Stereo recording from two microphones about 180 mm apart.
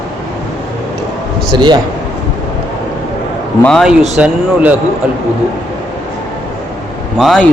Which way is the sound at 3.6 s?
Centre (ahead or behind).